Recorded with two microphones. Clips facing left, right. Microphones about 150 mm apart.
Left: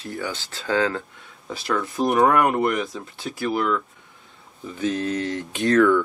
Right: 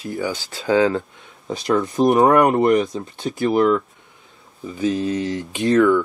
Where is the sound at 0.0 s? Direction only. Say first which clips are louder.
Right 5 dB; 10° right (ahead or behind); by 3.8 s 25° right (ahead or behind).